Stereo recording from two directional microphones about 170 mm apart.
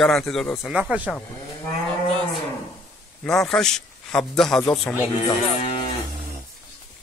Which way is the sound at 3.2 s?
5° left (ahead or behind).